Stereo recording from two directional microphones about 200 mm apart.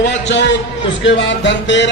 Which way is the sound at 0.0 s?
65° left (ahead or behind).